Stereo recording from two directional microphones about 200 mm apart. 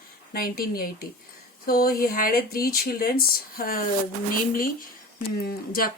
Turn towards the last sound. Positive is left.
turn(degrees=50)  # may be behind; listen again after turning